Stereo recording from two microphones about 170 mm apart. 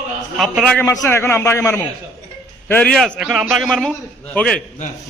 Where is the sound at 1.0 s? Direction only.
15° left (ahead or behind).